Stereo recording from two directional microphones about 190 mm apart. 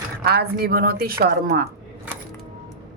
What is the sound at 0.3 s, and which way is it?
A woman's voice, 55° right (ahead or behind).